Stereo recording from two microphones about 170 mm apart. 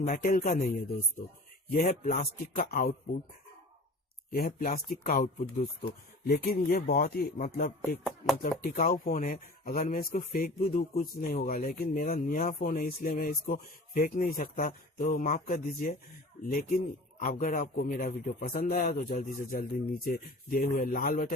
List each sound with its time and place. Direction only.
0.0 s a man's voice: 50° left (ahead or behind)
1.7 s a man's voice: 45° left (ahead or behind)
2.6 s speech: 60° left (ahead or behind)
4.3 s a man's voice: 60° left (ahead or behind); by 5.6 s 45° left (ahead or behind)
6.2 s speech: 60° left (ahead or behind)
7.8 s a sound: centre (ahead or behind)
8.4 s a man's voice: 55° left (ahead or behind)